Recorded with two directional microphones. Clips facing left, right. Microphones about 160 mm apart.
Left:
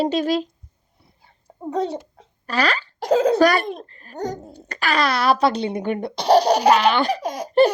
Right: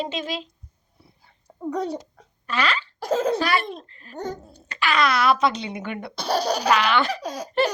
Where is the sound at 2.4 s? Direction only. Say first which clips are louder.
Left 3 dB; 35° left (ahead or behind).